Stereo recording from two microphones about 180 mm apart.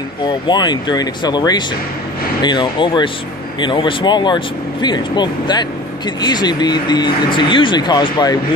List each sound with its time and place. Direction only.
0.2 s speech: 25° left (ahead or behind)